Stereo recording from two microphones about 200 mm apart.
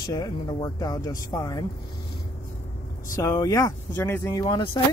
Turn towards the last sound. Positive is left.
turn(degrees=25)  # may be behind; listen again after turning